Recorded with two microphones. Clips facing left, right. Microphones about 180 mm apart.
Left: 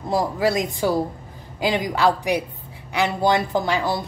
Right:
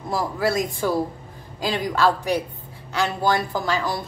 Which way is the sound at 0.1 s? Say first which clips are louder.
Left 2 dB; 15° left (ahead or behind).